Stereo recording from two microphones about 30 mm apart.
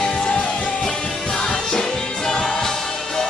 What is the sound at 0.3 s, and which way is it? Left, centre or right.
Music, left.